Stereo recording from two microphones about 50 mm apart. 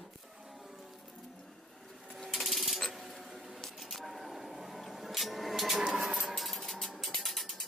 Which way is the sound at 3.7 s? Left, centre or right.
Centre.